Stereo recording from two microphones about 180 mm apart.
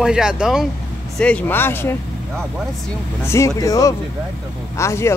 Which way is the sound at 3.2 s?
15° left (ahead or behind).